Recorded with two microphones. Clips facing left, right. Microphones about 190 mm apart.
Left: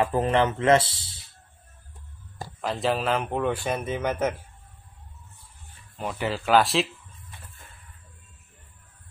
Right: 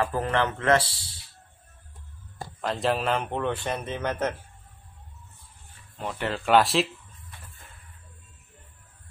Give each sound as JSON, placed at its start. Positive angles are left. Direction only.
{"t": 0.0, "sound": "speech", "side_deg": 20}
{"t": 2.6, "sound": "speech", "side_deg": 0}
{"t": 5.9, "sound": "speech", "side_deg": 5}